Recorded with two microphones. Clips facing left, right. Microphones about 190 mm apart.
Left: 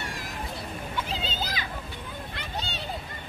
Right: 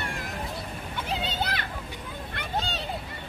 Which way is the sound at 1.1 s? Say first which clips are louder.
Right 3 dB; 60° right (ahead or behind).